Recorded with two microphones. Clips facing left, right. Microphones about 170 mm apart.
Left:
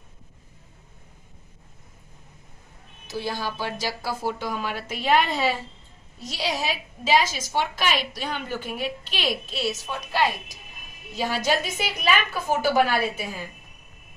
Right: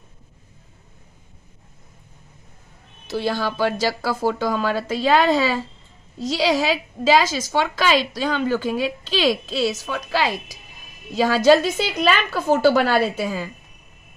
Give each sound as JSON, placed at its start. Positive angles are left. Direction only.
{"t": 3.1, "sound": "a woman's voice", "side_deg": -75}